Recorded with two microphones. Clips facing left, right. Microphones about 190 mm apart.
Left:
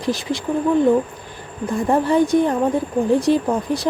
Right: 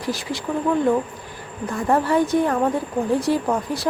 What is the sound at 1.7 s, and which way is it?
Speech, 20° left (ahead or behind).